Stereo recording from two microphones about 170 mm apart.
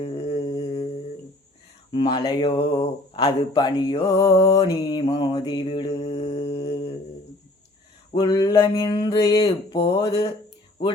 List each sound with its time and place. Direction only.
0.0 s humming: 35° left (ahead or behind)
1.9 s speech: 30° left (ahead or behind)
8.1 s speech: 25° left (ahead or behind)